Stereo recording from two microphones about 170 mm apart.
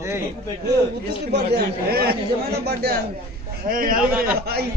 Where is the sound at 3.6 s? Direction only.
55° right (ahead or behind).